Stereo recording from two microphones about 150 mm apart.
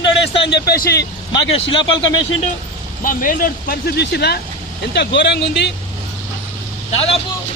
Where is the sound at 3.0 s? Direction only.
70° left (ahead or behind); by 4.4 s 90° left.